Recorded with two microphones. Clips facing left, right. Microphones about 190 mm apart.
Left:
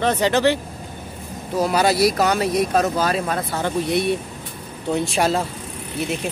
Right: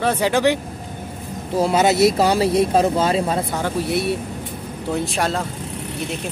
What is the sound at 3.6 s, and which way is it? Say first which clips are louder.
Speech: even; 5° right (ahead or behind).